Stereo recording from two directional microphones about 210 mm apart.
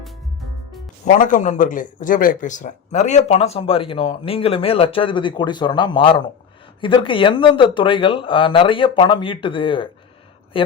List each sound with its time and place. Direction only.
1.0 s speech: 40° left (ahead or behind); by 9.9 s 25° left (ahead or behind)